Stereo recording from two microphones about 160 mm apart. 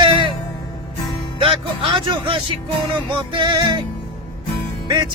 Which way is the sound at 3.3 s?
30° right (ahead or behind).